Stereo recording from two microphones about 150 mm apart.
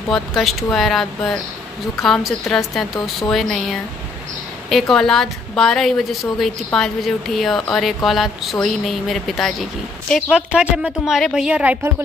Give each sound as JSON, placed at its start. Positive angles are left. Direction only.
{"t": 0.1, "sound": "a woman's voice", "side_deg": 0}